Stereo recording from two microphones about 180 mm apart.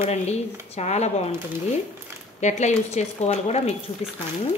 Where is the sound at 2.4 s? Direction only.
40° left (ahead or behind).